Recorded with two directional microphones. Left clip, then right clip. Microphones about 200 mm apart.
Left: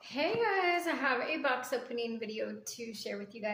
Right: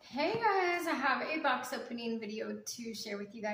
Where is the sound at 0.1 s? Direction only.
35° left (ahead or behind).